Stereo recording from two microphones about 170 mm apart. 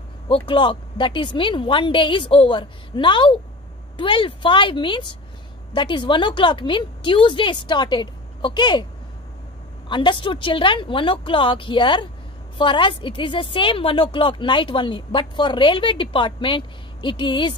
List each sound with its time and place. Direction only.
0.5 s a woman's voice: 30° left (ahead or behind)
9.8 s a woman's voice: 30° left (ahead or behind)